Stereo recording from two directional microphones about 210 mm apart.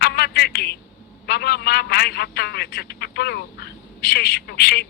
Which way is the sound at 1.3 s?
50° left (ahead or behind).